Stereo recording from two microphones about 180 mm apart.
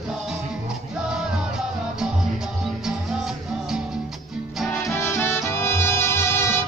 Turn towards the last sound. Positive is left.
turn(degrees=15)  # may be behind; listen again after turning